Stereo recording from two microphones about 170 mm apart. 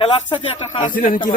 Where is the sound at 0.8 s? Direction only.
50° left (ahead or behind).